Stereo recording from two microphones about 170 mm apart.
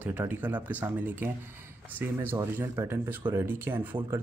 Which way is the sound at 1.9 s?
10° right (ahead or behind).